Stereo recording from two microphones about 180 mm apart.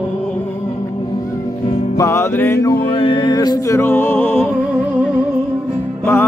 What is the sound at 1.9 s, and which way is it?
Music, 15° left (ahead or behind).